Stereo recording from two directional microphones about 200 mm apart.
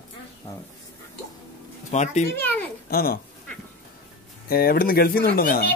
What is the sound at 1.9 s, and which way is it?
Speech, 35° left (ahead or behind).